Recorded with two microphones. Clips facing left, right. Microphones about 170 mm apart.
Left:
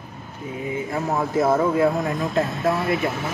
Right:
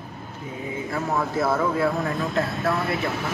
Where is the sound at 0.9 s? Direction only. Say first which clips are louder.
Left 2 dB; 20° left (ahead or behind).